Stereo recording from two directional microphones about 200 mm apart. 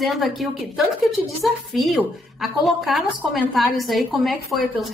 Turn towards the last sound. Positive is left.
turn(degrees=0)  # may be behind; listen again after turning